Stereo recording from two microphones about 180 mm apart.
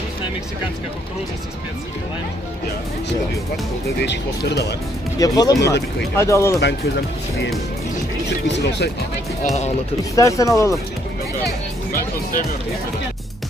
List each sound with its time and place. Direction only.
4.0 s speech: 70° left (ahead or behind)
5.2 s speech: 20° left (ahead or behind)
8.5 s speech: 75° left (ahead or behind)
10.1 s speech: 20° left (ahead or behind)
11.9 s speech: 50° left (ahead or behind)